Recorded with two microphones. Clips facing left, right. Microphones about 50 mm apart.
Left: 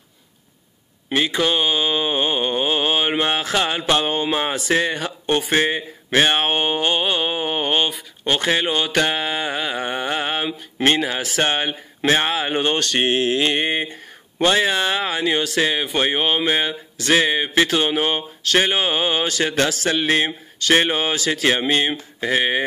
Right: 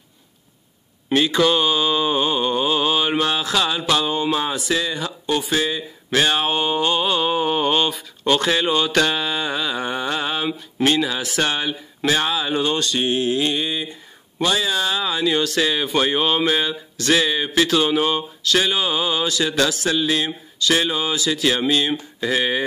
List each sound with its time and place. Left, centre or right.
1.1 s mantra: left
4.0 s a sound: left
4.4 s speech: left
6.1 s mantra: left
8.3 s speech: left